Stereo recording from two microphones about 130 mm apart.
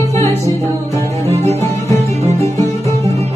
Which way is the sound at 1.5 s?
20° left (ahead or behind).